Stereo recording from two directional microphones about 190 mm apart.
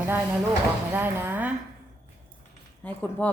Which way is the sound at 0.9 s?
10° right (ahead or behind).